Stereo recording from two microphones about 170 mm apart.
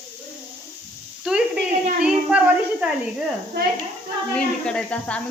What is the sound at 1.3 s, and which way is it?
Sizzle, 5° right (ahead or behind).